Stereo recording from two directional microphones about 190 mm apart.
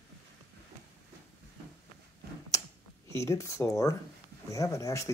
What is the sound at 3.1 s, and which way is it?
Speech, 15° left (ahead or behind).